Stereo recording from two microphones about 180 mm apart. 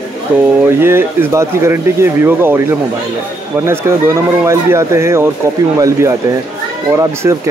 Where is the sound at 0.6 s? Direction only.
15° right (ahead or behind).